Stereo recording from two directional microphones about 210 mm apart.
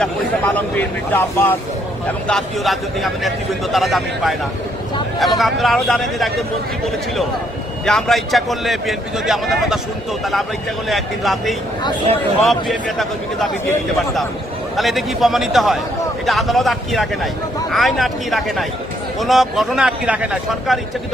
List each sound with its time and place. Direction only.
0.0 s a man's voice: 5° left (ahead or behind)
5.4 s a man's voice: centre (ahead or behind)
7.9 s a man's voice: centre (ahead or behind)
14.8 s a man's voice: centre (ahead or behind)